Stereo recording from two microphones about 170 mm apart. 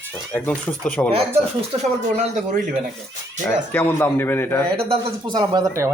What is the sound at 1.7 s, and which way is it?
Speech, 35° right (ahead or behind).